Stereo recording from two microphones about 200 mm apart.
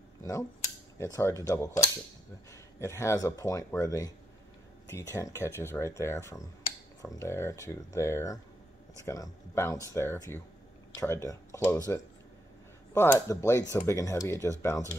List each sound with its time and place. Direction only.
0.2 s speech: 15° left (ahead or behind)